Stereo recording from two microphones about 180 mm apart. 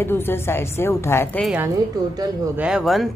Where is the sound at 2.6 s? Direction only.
5° right (ahead or behind).